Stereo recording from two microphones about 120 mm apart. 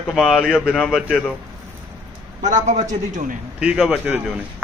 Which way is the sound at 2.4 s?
90° right.